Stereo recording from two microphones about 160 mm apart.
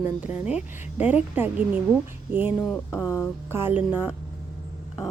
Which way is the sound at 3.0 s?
20° left (ahead or behind).